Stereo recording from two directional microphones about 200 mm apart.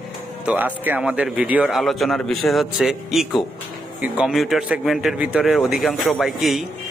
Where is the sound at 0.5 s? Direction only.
10° right (ahead or behind).